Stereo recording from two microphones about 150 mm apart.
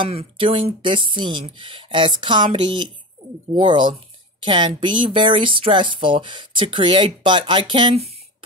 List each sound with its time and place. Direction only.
0.0 s speech: 40° right (ahead or behind)